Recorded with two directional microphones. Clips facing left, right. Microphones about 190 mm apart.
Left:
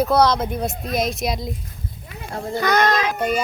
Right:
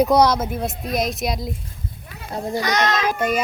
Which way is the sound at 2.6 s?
55° left (ahead or behind).